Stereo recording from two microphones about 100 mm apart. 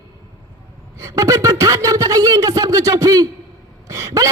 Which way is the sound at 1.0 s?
30° right (ahead or behind).